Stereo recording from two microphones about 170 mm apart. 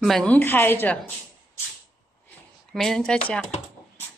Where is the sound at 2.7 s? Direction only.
Centre (ahead or behind).